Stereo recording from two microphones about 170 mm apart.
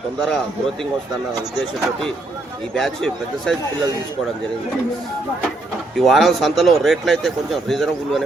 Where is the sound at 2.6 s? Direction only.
5° left (ahead or behind).